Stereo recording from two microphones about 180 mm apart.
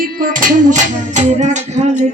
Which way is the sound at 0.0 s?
50° right (ahead or behind).